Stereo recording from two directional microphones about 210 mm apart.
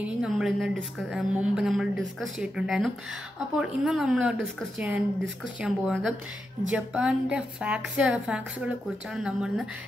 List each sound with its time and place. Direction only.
0.0 s a woman's voice: 5° right (ahead or behind)